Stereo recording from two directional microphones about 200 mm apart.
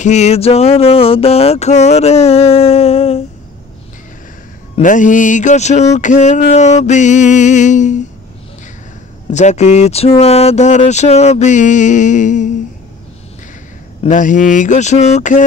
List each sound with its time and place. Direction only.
0.0 s speech: 35° left (ahead or behind)
4.8 s speech: 40° left (ahead or behind)
9.3 s speech: 35° left (ahead or behind)
14.0 s speech: 40° left (ahead or behind)